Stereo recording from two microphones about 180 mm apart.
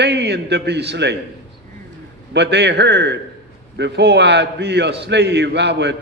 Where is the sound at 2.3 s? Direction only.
70° right (ahead or behind).